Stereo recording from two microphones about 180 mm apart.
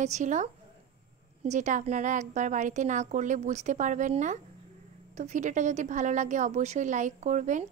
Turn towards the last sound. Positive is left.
turn(degrees=-40)  # may be behind; listen again after turning